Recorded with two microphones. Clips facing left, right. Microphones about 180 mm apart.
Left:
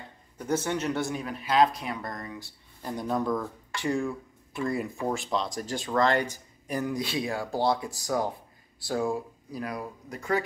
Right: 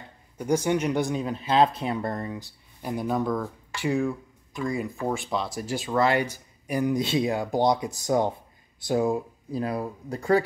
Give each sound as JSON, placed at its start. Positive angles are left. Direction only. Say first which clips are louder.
{"t": 0.4, "sound": "speech", "louder": "right 5 dB", "side_deg": -10}
{"t": 2.3, "sound": "speech", "louder": "right 4 dB", "side_deg": -15}
{"t": 3.0, "sound": "speech", "louder": "right 2 dB", "side_deg": 0}